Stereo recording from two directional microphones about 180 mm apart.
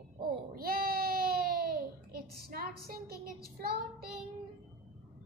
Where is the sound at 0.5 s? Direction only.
55° right (ahead or behind).